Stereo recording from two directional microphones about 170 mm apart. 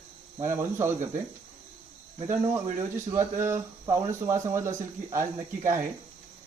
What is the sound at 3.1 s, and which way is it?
Speech, 15° right (ahead or behind).